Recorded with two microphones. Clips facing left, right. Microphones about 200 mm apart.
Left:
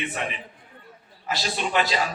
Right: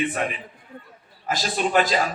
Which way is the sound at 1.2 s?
45° right (ahead or behind).